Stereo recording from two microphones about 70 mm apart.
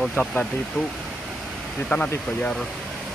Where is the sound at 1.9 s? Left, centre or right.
Left.